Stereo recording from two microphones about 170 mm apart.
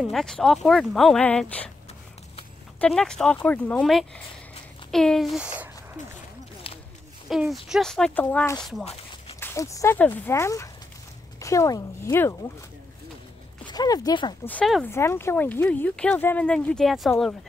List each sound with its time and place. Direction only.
0.0 s speech: centre (ahead or behind)
2.8 s speech: 5° left (ahead or behind)
6.7 s a sound: 35° left (ahead or behind)
7.2 s speech: centre (ahead or behind); by 12.4 s 15° left (ahead or behind)
13.7 s speech: 25° left (ahead or behind)
14.4 s speech: 10° left (ahead or behind)